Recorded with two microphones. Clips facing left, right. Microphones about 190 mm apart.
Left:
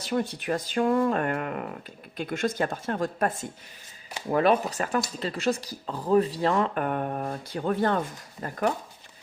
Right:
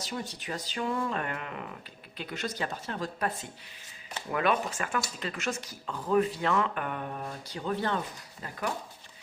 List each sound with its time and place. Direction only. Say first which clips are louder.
0.0 s speech: left 9 dB; 60° left (ahead or behind)
4.3 s speech: left 6 dB; 35° left (ahead or behind)